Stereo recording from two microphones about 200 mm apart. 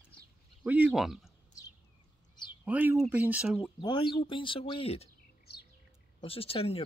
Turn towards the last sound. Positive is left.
turn(degrees=30)  # may be behind; listen again after turning